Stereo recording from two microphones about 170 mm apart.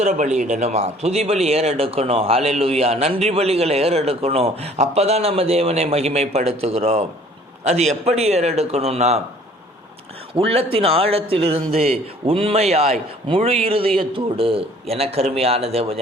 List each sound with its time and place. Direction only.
0.0 s speech: 45° right (ahead or behind)
10.3 s speech: 35° right (ahead or behind)